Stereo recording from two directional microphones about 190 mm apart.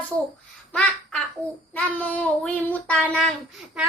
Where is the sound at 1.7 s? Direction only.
5° left (ahead or behind).